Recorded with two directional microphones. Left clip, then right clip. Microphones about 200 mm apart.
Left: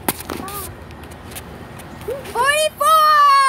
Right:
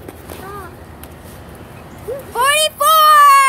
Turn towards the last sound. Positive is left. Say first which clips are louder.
# right 4 dB
turn(degrees=-35)  # may be behind; listen again after turning